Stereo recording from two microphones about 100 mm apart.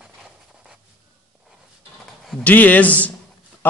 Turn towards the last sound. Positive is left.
turn(degrees=15)  # may be behind; listen again after turning